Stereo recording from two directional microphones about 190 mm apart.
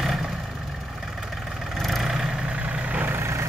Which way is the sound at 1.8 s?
Centre (ahead or behind).